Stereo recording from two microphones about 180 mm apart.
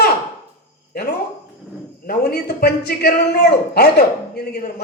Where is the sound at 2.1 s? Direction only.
60° left (ahead or behind).